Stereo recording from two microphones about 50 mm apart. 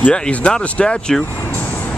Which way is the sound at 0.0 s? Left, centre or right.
Left.